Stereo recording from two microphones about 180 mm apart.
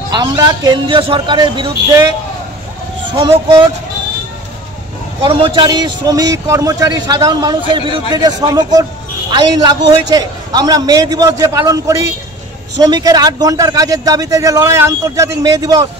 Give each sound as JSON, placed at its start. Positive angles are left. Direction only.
{"t": 0.1, "sound": "a man's voice", "side_deg": -20}
{"t": 3.2, "sound": "a man's voice", "side_deg": -25}
{"t": 5.2, "sound": "a man's voice", "side_deg": -30}